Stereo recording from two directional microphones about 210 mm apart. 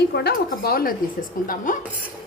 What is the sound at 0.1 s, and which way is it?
Speech, 50° left (ahead or behind).